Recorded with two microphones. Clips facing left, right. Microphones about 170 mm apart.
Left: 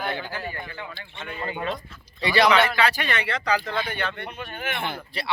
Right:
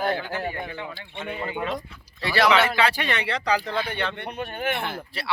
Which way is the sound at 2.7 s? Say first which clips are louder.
Even; 25° right (ahead or behind).